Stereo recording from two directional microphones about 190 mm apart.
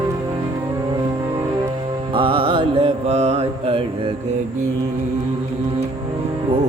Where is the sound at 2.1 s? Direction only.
30° right (ahead or behind).